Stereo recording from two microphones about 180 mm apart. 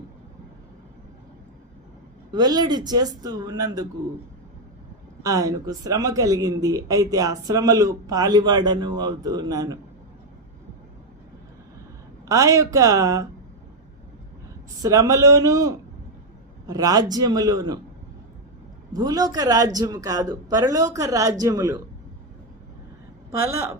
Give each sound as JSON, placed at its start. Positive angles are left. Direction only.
{"t": 2.3, "sound": "speech", "side_deg": -20}
{"t": 5.2, "sound": "speech", "side_deg": -20}
{"t": 12.2, "sound": "speech", "side_deg": -15}
{"t": 14.8, "sound": "speech", "side_deg": -20}
{"t": 18.9, "sound": "speech", "side_deg": -20}
{"t": 23.3, "sound": "speech", "side_deg": -15}